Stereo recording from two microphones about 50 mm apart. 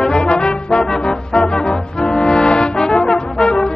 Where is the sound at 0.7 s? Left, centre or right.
Centre.